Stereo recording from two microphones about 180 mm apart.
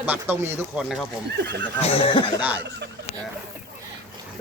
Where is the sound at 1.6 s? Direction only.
30° left (ahead or behind).